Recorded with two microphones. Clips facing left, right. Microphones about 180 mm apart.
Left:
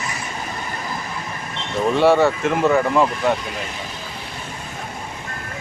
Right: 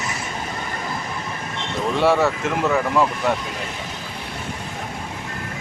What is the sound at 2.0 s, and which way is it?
Speech, centre (ahead or behind).